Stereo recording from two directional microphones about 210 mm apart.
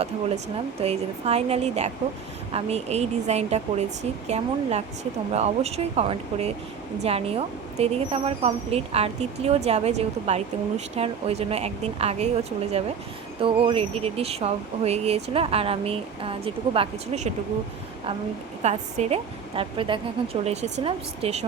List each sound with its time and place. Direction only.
0.0 s a woman's voice: 30° right (ahead or behind)
13.4 s a woman's voice: 25° right (ahead or behind)
18.6 s a woman's voice: 30° right (ahead or behind)